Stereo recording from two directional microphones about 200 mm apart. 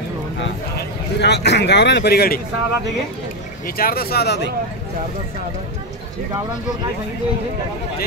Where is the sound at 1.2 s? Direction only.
55° left (ahead or behind).